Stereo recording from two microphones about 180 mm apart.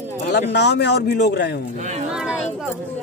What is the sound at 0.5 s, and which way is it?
A man's voice, 70° left (ahead or behind).